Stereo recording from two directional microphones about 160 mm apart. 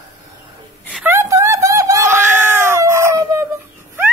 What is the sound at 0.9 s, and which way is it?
Screaming, 15° right (ahead or behind).